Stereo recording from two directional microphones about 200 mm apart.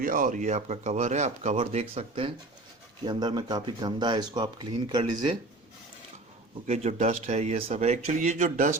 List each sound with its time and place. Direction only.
0.0 s speech: 45° right (ahead or behind); by 5.0 s 20° right (ahead or behind)
6.7 s speech: 35° right (ahead or behind)